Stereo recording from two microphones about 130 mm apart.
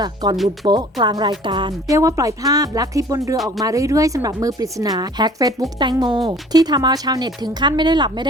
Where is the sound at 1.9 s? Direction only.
25° right (ahead or behind).